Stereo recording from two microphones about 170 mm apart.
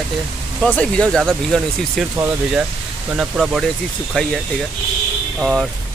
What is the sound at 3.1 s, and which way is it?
Speech, 5° right (ahead or behind).